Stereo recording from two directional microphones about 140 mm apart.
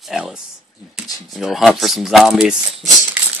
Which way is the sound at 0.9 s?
Centre (ahead or behind).